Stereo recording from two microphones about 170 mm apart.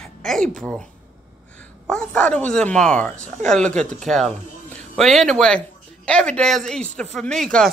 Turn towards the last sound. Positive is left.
turn(degrees=0)  # may be behind; listen again after turning